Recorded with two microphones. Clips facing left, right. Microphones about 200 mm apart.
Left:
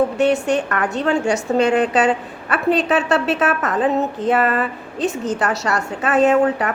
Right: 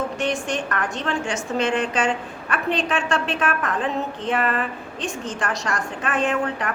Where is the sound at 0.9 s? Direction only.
40° left (ahead or behind).